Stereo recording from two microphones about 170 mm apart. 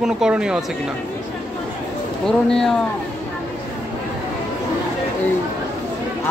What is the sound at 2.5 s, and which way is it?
Speech, centre (ahead or behind).